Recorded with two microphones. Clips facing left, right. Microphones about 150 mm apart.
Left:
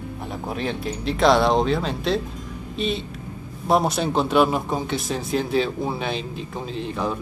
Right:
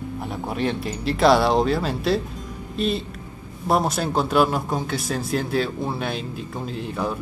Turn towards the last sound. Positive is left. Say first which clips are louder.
# even
turn(degrees=-10)  # may be behind; listen again after turning